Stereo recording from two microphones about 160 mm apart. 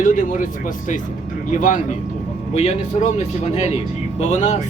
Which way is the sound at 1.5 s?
50° left (ahead or behind).